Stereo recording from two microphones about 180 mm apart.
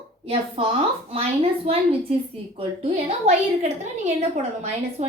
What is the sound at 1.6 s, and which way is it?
A woman's voice, 35° right (ahead or behind).